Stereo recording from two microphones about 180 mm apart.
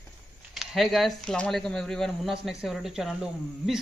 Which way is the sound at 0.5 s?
Centre (ahead or behind).